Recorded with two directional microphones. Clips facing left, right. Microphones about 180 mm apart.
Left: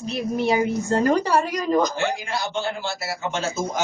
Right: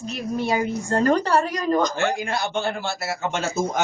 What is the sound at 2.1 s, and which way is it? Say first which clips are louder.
A man's voice: right 2 dB; 55° right (ahead or behind).